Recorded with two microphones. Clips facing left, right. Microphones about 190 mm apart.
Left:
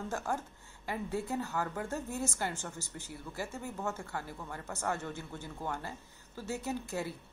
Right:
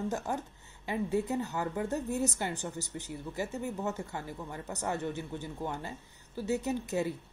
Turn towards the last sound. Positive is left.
turn(degrees=-20)  # may be behind; listen again after turning